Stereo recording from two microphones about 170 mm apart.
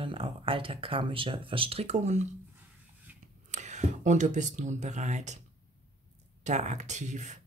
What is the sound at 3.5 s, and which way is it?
Speech, 45° right (ahead or behind).